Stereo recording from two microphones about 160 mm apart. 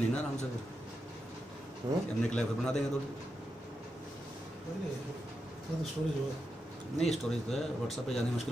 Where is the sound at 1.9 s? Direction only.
20° right (ahead or behind).